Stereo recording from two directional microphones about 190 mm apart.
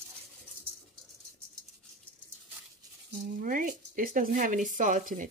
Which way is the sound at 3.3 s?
45° right (ahead or behind).